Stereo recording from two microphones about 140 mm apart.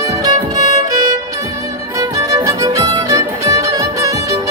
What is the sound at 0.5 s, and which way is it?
Music, 60° left (ahead or behind).